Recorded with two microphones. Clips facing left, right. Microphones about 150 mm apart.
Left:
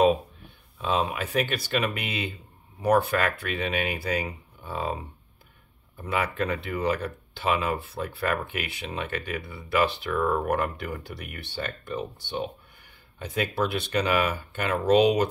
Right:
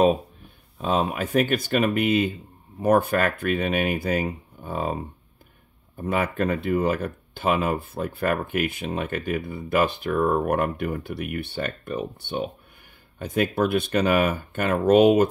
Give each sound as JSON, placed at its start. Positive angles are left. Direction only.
{"t": 0.7, "sound": "speech", "side_deg": -40}
{"t": 13.2, "sound": "speech", "side_deg": -50}